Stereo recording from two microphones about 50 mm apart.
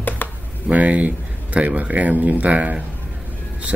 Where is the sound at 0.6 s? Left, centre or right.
Right.